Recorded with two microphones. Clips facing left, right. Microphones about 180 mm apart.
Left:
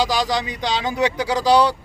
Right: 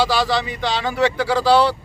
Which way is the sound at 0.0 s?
15° left (ahead or behind).